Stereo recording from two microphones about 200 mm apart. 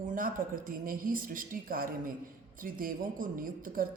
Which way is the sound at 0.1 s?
40° right (ahead or behind).